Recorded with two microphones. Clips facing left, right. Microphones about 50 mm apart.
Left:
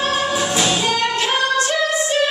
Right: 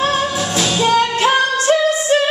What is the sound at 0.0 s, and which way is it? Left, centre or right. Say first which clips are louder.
Music: right 2 dB; centre.